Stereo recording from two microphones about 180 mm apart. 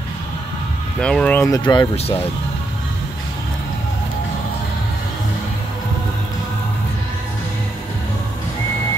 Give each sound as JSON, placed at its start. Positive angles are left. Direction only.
{"t": 0.9, "sound": "speech", "side_deg": 5}
{"t": 1.6, "sound": "speech", "side_deg": 25}